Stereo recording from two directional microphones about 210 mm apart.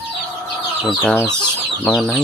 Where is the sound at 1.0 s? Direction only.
5° left (ahead or behind).